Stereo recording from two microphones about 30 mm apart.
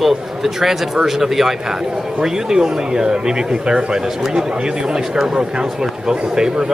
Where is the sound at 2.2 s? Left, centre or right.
Centre.